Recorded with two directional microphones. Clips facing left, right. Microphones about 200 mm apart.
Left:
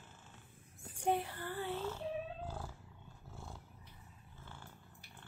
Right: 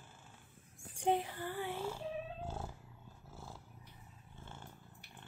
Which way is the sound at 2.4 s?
25° right (ahead or behind).